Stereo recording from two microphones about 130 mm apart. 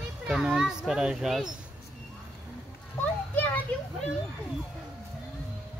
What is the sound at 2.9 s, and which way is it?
Children playing, 15° left (ahead or behind).